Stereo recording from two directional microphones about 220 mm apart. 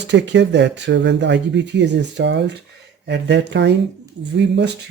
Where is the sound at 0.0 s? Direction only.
55° right (ahead or behind).